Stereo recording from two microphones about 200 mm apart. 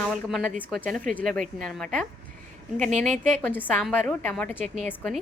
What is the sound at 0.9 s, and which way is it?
Speech, 45° right (ahead or behind).